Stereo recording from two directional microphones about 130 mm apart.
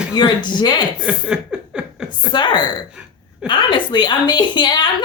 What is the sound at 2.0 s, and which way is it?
A woman's voice, 35° left (ahead or behind).